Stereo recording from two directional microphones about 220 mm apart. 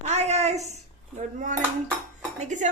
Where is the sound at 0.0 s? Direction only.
30° right (ahead or behind).